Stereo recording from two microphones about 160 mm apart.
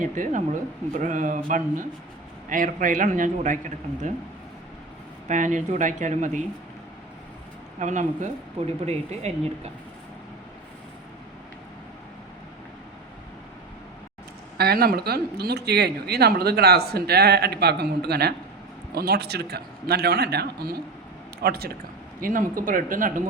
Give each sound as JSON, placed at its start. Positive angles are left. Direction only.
{"t": 0.1, "sound": "a man's voice", "side_deg": -55}
{"t": 5.3, "sound": "speech", "side_deg": -50}
{"t": 7.8, "sound": "speech", "side_deg": -50}
{"t": 14.6, "sound": "a man's voice", "side_deg": -75}
{"t": 21.4, "sound": "speech", "side_deg": -75}
{"t": 22.2, "sound": "a man's voice", "side_deg": -55}